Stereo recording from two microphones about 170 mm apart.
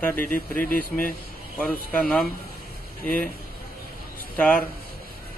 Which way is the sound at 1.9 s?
5° left (ahead or behind).